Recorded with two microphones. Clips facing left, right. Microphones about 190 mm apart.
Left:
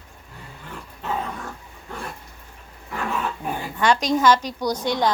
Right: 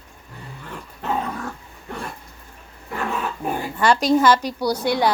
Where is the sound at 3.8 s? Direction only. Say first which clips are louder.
Right 3 dB; 10° right (ahead or behind).